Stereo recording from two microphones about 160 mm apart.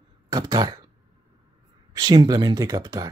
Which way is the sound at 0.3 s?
25° right (ahead or behind).